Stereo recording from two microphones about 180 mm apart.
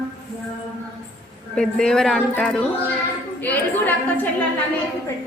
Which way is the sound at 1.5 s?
5° left (ahead or behind).